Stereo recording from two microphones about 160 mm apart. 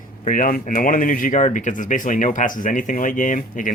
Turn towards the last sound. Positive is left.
turn(degrees=55)  # may be behind; listen again after turning